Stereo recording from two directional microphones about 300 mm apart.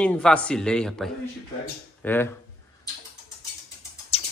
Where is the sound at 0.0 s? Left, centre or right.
Centre.